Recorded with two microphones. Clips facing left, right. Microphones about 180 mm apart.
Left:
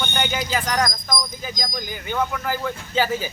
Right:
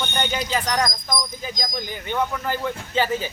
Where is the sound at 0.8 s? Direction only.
10° right (ahead or behind).